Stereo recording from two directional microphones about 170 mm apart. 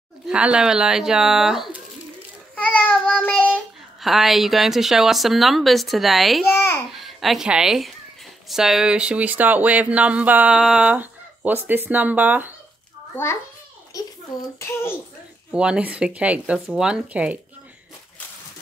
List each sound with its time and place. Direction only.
0.3 s a child's voice: 5° right (ahead or behind)
6.5 s a child's voice: 15° left (ahead or behind)
6.9 s a woman's voice: centre (ahead or behind)
13.1 s a child's voice: 15° left (ahead or behind)
13.9 s a sound: 20° left (ahead or behind)
14.6 s a child's voice: 15° left (ahead or behind)
15.5 s speech: 5° right (ahead or behind)